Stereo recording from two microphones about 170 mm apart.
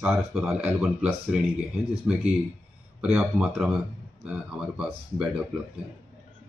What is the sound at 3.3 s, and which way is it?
Speech, 5° right (ahead or behind).